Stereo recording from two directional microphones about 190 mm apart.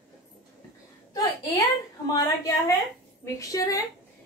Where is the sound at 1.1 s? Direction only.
20° left (ahead or behind).